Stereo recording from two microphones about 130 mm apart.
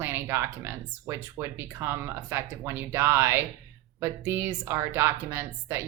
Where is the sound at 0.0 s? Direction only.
20° right (ahead or behind).